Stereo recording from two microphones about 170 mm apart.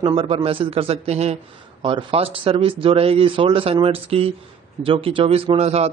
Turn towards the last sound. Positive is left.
turn(degrees=-35)  # may be behind; listen again after turning